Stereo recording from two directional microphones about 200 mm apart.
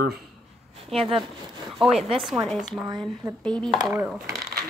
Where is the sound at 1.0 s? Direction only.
30° right (ahead or behind).